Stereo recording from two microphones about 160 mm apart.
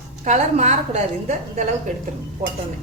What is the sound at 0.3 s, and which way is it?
Speech, 45° right (ahead or behind).